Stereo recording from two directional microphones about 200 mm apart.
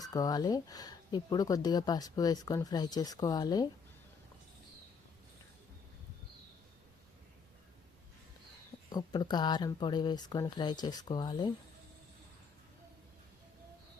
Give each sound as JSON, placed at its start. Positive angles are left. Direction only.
{"t": 0.0, "sound": "speech", "side_deg": 20}
{"t": 8.9, "sound": "speech", "side_deg": 20}